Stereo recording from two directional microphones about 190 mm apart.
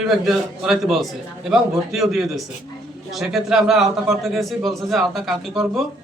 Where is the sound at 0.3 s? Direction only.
Centre (ahead or behind).